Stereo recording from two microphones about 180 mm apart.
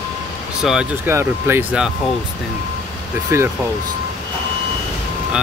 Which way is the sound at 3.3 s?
15° right (ahead or behind).